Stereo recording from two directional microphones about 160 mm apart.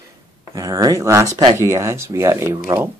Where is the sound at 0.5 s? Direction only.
20° right (ahead or behind).